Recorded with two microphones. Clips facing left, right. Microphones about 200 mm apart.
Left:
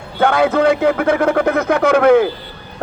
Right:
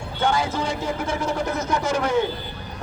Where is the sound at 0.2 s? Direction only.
60° left (ahead or behind).